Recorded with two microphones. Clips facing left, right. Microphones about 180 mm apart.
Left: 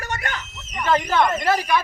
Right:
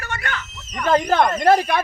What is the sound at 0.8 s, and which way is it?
Speech, 50° right (ahead or behind).